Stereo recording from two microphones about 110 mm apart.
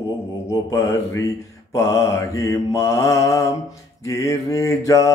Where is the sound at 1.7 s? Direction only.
30° left (ahead or behind).